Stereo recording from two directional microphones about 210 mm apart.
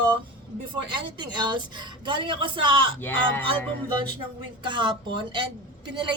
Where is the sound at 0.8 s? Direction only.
20° right (ahead or behind).